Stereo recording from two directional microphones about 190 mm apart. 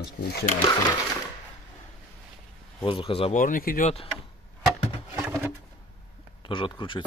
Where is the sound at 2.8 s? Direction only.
30° left (ahead or behind).